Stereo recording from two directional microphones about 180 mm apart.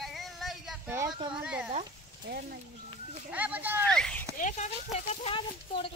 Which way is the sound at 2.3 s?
70° right (ahead or behind).